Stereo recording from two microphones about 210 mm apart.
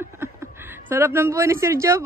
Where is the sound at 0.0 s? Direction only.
10° right (ahead or behind).